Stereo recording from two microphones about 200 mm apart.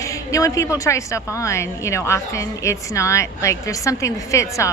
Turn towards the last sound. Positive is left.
turn(degrees=15)  # may be behind; listen again after turning